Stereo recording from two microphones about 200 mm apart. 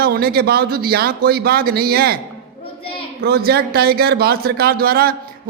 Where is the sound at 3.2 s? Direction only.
50° right (ahead or behind).